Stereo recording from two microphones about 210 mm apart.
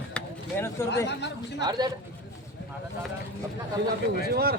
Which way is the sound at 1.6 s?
20° right (ahead or behind).